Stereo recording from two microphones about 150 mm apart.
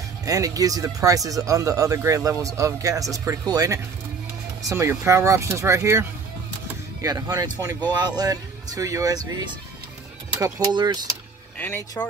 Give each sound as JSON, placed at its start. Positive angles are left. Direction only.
{"t": 0.2, "sound": "speech", "side_deg": -20}
{"t": 11.5, "sound": "speech", "side_deg": 15}